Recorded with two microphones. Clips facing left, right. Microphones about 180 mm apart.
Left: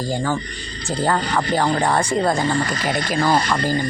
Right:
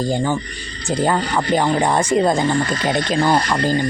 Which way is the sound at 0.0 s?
20° right (ahead or behind).